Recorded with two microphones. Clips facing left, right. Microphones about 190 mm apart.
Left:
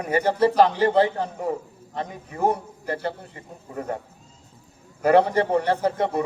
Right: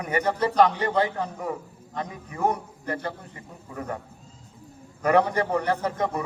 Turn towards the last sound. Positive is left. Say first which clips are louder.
# left 4 dB
turn(degrees=30)  # may be behind; listen again after turning